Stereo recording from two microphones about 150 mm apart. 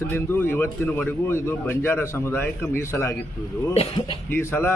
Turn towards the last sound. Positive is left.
turn(degrees=15)  # may be behind; listen again after turning